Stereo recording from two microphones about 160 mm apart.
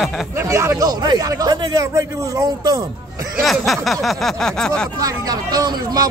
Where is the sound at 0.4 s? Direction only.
15° right (ahead or behind).